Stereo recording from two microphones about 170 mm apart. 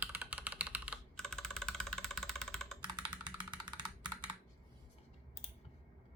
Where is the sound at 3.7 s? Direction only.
25° right (ahead or behind).